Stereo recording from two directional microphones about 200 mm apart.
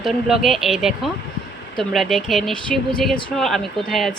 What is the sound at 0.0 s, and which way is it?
Speech, centre (ahead or behind).